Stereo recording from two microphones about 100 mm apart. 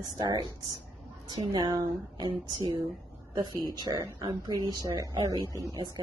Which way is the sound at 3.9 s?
30° right (ahead or behind).